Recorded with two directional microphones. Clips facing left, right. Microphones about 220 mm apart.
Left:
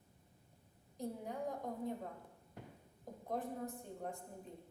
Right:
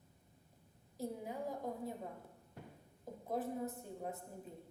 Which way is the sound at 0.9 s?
5° right (ahead or behind).